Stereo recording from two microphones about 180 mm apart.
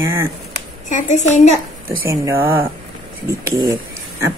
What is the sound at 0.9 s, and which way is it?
Speech, 40° left (ahead or behind).